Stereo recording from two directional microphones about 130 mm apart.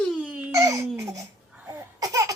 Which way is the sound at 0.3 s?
10° right (ahead or behind).